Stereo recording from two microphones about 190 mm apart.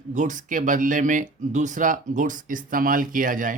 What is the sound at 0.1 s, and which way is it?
Speech, 40° right (ahead or behind).